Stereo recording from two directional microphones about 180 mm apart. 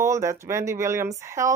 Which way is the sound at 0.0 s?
15° right (ahead or behind).